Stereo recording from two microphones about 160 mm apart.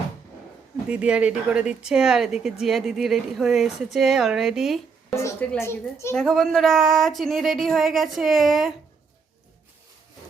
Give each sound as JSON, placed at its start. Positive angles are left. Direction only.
{"t": 0.9, "sound": "speech", "side_deg": -5}
{"t": 5.1, "sound": "a child's voice", "side_deg": 20}
{"t": 6.1, "sound": "speech", "side_deg": 0}